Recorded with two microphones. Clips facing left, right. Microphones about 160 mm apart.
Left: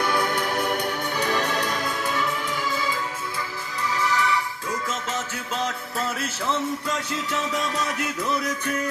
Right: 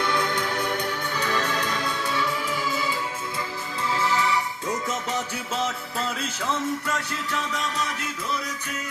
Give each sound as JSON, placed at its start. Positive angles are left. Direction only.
{"t": 0.0, "sound": "music", "side_deg": 10}
{"t": 3.9, "sound": "music", "side_deg": -25}